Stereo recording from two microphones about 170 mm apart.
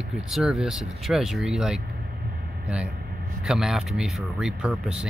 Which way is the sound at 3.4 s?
5° right (ahead or behind).